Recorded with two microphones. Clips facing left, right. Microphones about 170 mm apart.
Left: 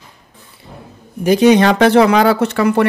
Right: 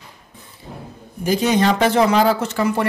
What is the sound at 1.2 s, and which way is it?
Speech, 70° left (ahead or behind).